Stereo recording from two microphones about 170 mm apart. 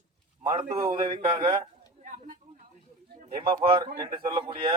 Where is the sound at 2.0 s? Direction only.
55° right (ahead or behind).